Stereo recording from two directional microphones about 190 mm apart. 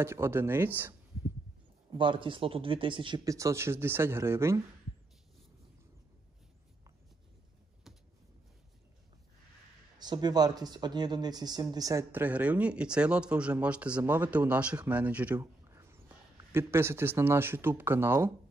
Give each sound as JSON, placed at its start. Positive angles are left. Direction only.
{"t": 0.0, "sound": "speech", "side_deg": -15}
{"t": 1.9, "sound": "speech", "side_deg": -25}
{"t": 9.9, "sound": "speech", "side_deg": -20}
{"t": 15.3, "sound": "a sound", "side_deg": -15}
{"t": 16.5, "sound": "speech", "side_deg": -10}